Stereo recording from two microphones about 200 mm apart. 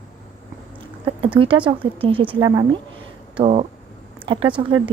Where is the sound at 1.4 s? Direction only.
25° right (ahead or behind).